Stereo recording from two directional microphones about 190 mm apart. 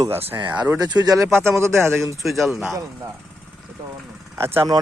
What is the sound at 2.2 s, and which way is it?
Speech, centre (ahead or behind).